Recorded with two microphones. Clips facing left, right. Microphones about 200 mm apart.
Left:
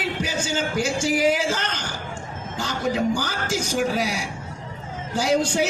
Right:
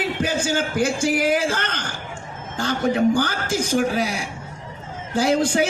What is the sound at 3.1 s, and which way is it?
A man's voice, 55° right (ahead or behind).